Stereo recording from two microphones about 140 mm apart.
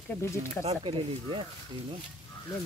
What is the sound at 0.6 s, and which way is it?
Speech, 40° right (ahead or behind).